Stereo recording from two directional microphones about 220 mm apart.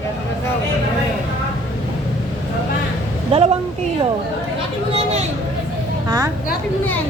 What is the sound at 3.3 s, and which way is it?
Speech, 25° right (ahead or behind).